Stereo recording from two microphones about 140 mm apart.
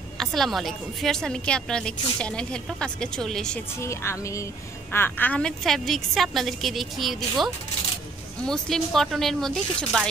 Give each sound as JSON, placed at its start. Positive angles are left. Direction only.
{"t": 0.2, "sound": "a woman's voice", "side_deg": 0}
{"t": 3.8, "sound": "a woman's voice", "side_deg": 20}